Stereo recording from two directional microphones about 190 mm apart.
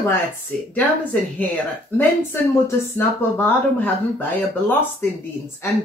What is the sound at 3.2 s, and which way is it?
Speech, 10° left (ahead or behind).